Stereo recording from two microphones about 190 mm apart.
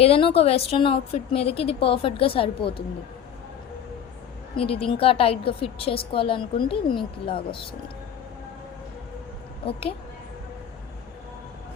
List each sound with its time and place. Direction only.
0.0 s a woman's voice: 30° left (ahead or behind)
4.5 s a woman's voice: 30° left (ahead or behind)